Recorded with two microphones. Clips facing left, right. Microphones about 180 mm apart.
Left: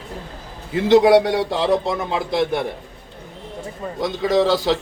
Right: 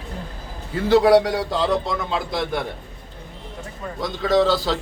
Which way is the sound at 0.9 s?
20° left (ahead or behind).